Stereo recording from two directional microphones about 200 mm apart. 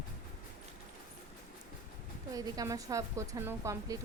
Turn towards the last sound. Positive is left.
turn(degrees=-15)  # may be behind; listen again after turning